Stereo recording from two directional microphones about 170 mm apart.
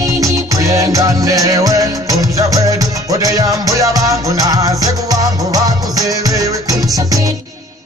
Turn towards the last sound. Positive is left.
turn(degrees=-20)  # may be behind; listen again after turning